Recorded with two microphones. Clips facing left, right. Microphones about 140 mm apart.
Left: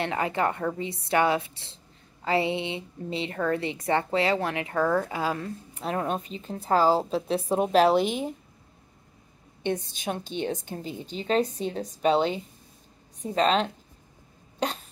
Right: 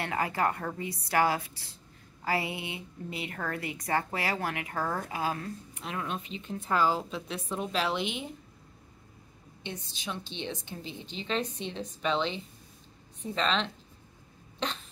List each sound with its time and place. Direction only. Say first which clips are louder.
0.0 s a woman's voice: left 3 dB; 25° left (ahead or behind); by 8.3 s 40° left (ahead or behind)
9.7 s a woman's voice: left 10 dB; 50° left (ahead or behind)